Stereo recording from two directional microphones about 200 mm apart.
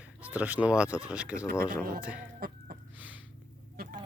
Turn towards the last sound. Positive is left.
turn(degrees=-45)  # may be behind; listen again after turning